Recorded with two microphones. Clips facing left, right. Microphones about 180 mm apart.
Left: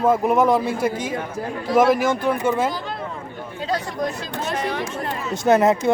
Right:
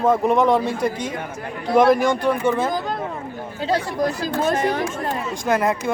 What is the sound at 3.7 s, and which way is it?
Speech, 35° right (ahead or behind).